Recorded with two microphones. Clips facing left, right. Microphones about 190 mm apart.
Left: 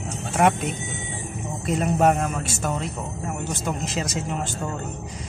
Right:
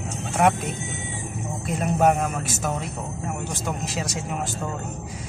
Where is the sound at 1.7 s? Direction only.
Centre (ahead or behind).